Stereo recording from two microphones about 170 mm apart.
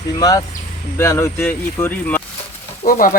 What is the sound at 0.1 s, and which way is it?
Speech, 20° left (ahead or behind).